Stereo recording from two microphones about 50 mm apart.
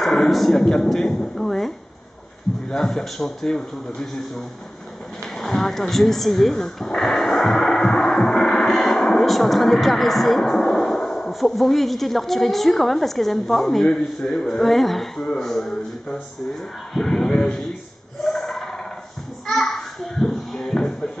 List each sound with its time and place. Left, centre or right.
0.0 s speech: centre
2.7 s a man's voice: centre
5.2 s a sound: centre
11.3 s a woman's voice: centre
14.6 s a woman's voice: centre
15.1 s speech: centre
15.4 s a man's voice: centre
18.2 s a sound: centre